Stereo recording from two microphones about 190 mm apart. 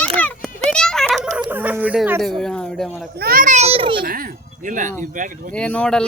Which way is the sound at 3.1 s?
50° right (ahead or behind).